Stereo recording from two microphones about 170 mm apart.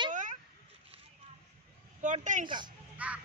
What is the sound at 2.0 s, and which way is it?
Speech, 45° right (ahead or behind).